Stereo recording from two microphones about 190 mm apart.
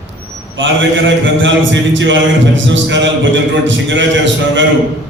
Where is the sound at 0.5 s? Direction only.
70° right (ahead or behind).